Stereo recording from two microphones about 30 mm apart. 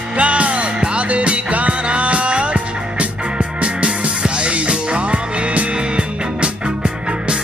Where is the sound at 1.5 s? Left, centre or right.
Right.